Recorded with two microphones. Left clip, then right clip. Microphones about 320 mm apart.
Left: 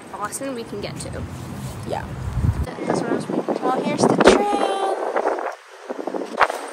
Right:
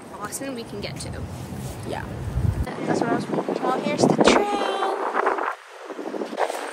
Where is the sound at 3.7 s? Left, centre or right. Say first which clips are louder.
Left 2 dB; centre.